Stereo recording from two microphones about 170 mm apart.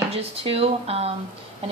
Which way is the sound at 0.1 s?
35° right (ahead or behind).